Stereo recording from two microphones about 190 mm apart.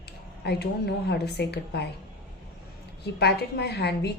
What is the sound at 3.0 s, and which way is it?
A woman's voice, 60° left (ahead or behind).